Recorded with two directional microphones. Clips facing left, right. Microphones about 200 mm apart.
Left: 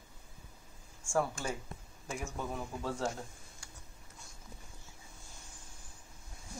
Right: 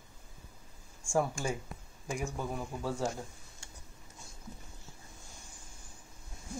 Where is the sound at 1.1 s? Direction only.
10° right (ahead or behind).